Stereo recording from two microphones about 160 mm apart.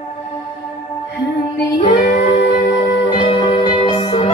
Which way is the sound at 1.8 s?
50° left (ahead or behind).